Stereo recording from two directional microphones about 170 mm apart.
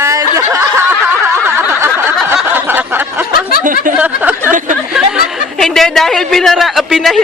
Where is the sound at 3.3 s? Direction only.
60° left (ahead or behind).